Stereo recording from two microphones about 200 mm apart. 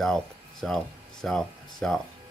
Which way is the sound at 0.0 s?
Centre (ahead or behind).